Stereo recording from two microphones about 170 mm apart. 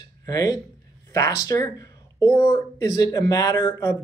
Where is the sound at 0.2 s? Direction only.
20° left (ahead or behind).